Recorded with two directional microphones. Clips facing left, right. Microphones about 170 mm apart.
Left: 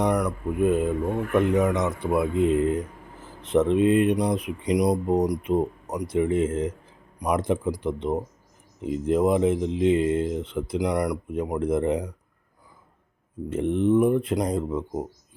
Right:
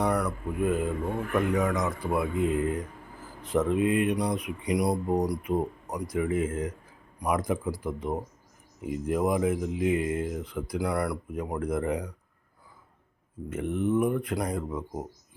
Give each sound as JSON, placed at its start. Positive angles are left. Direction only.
{"t": 0.0, "sound": "speech", "side_deg": 15}
{"t": 13.5, "sound": "speech", "side_deg": 30}